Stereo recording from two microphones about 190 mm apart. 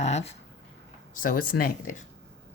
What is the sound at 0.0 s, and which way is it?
Speech, 35° left (ahead or behind).